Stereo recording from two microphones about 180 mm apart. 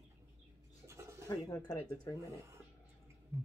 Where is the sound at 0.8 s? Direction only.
15° right (ahead or behind).